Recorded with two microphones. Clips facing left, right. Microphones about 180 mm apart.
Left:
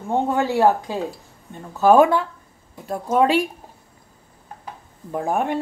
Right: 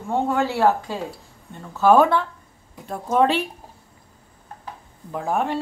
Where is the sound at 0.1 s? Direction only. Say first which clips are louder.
Left 2 dB; 15° left (ahead or behind).